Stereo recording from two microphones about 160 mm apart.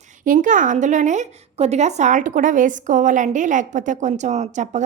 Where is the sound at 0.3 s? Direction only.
55° right (ahead or behind).